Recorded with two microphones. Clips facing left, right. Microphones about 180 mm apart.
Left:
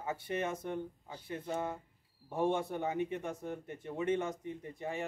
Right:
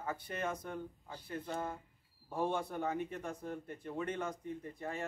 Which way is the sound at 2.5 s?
20° left (ahead or behind).